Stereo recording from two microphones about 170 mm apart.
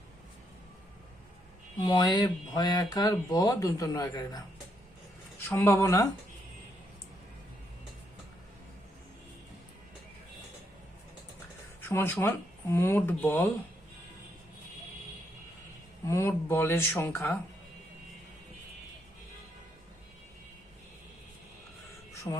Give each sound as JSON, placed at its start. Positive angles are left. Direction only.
{"t": 1.8, "sound": "speech", "side_deg": 25}
{"t": 11.8, "sound": "speech", "side_deg": 15}
{"t": 16.0, "sound": "speech", "side_deg": 15}
{"t": 22.1, "sound": "music", "side_deg": 20}